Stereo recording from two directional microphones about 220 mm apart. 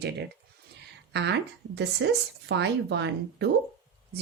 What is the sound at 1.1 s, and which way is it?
Speech, 50° right (ahead or behind).